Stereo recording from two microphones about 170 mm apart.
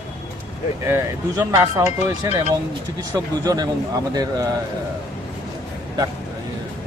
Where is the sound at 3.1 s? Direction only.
20° right (ahead or behind).